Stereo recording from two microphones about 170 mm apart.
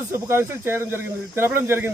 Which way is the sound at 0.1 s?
15° right (ahead or behind).